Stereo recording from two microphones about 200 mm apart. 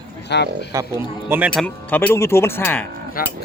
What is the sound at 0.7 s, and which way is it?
Speech, 15° right (ahead or behind).